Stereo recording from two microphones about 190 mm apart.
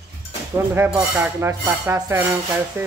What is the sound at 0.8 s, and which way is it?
Speech, 10° right (ahead or behind).